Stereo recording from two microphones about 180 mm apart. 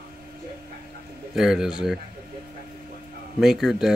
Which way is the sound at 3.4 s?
Centre (ahead or behind).